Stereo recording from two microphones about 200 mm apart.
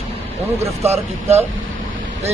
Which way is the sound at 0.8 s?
30° right (ahead or behind).